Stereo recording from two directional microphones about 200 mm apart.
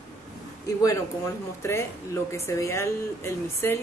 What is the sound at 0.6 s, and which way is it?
Speech, 15° left (ahead or behind).